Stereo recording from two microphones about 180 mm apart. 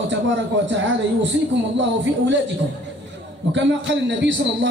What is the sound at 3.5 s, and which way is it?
Speech, 85° right.